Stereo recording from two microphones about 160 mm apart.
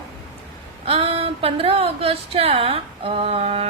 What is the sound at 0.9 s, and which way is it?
Speech, 40° right (ahead or behind).